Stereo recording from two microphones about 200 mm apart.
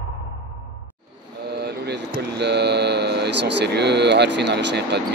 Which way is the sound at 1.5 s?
55° right (ahead or behind).